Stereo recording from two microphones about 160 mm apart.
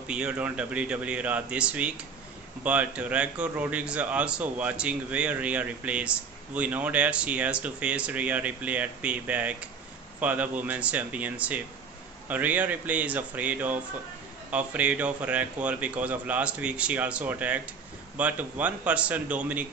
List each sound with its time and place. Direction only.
0.0 s a man's voice: 5° right (ahead or behind)